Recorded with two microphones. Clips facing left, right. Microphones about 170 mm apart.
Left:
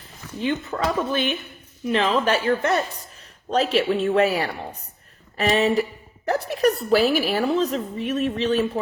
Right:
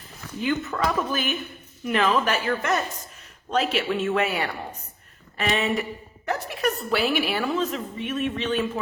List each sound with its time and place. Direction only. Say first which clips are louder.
0.4 s a woman's voice: left 1 dB; 30° left (ahead or behind)